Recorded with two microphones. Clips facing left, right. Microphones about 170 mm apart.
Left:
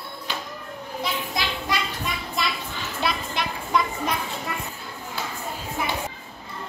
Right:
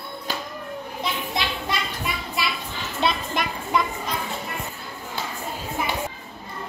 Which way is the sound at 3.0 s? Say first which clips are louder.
Right 3 dB; 25° right (ahead or behind).